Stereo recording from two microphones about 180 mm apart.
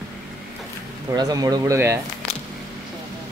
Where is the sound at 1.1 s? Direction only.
20° right (ahead or behind).